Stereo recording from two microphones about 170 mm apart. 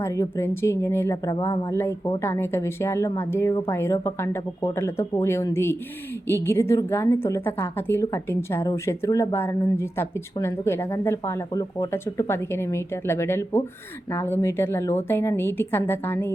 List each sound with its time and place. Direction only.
0.0 s a woman's voice: 15° left (ahead or behind)